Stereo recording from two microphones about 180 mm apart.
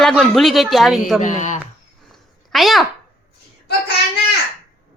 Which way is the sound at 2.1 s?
Centre (ahead or behind).